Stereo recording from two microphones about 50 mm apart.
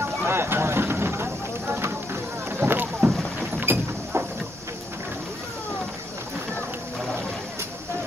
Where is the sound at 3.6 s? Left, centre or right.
Right.